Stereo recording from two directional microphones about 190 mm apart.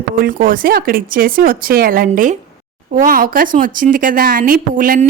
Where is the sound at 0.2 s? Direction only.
45° right (ahead or behind).